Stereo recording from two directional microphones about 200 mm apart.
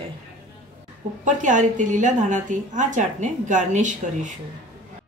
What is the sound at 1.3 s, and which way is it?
A woman's voice, 40° right (ahead or behind).